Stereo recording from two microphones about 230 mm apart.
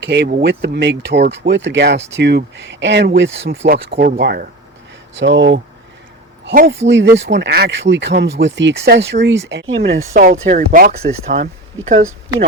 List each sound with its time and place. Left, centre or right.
0.0 s speech: right
3.7 s speech: right
10.5 s speech: right